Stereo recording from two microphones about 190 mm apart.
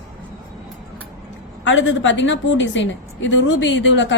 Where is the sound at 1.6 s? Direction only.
80° left.